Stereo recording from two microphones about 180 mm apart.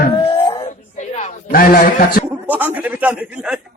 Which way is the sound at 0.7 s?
40° left (ahead or behind).